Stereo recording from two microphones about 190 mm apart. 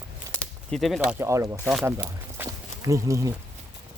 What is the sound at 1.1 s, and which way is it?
Speech, 15° right (ahead or behind).